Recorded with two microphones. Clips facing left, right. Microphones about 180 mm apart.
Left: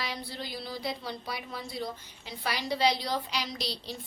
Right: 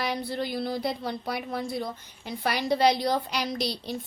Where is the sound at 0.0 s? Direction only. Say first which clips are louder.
Right 8 dB; 55° right (ahead or behind).